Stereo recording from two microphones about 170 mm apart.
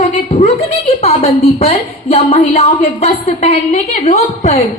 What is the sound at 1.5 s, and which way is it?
A woman's voice, 35° left (ahead or behind).